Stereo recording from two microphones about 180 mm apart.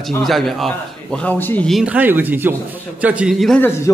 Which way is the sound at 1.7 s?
5° right (ahead or behind).